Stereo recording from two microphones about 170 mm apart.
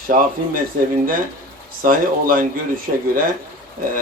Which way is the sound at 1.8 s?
55° right (ahead or behind).